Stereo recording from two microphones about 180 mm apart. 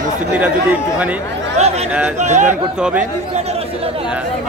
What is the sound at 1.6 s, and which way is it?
Speech, 40° right (ahead or behind).